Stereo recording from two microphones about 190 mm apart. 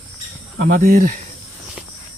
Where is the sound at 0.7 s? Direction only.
50° right (ahead or behind).